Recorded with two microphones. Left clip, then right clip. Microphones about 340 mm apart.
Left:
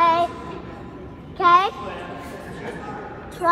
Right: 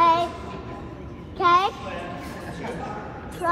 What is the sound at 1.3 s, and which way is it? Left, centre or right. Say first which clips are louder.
Speech: left 3 dB; left.